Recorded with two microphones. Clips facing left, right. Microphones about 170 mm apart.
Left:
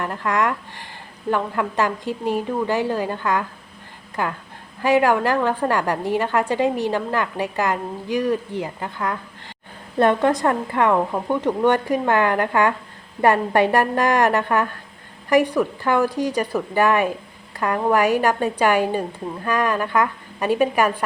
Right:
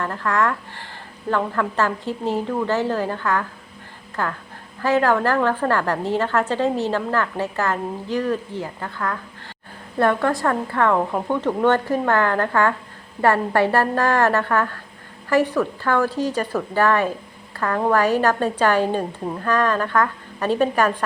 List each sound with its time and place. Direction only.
0.0 s a woman's voice: 15° left (ahead or behind)